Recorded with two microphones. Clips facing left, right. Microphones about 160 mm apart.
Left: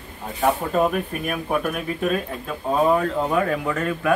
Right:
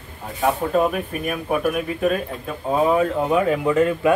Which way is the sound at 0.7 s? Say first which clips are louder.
Right 1 dB; centre (ahead or behind).